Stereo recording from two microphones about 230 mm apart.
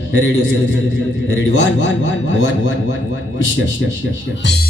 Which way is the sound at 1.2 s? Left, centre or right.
Left.